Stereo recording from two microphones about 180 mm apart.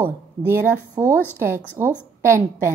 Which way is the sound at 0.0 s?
15° right (ahead or behind).